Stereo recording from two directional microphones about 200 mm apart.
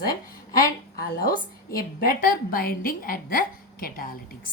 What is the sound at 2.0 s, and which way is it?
A woman's voice, 45° left (ahead or behind).